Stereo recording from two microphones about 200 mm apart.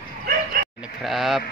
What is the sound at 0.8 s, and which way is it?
Speech, centre (ahead or behind).